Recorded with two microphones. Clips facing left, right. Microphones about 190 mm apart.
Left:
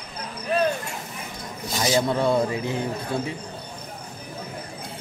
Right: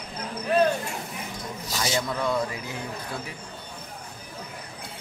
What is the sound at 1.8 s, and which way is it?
Speech, 30° left (ahead or behind).